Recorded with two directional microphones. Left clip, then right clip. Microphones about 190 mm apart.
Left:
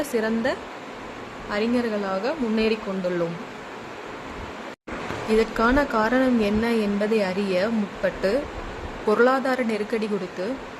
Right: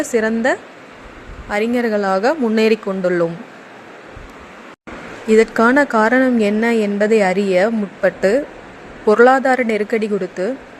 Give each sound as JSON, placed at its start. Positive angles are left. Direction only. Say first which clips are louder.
{"t": 0.1, "sound": "speech", "louder": "right 10 dB", "side_deg": -30}
{"t": 5.3, "sound": "speech", "louder": "right 8 dB", "side_deg": -35}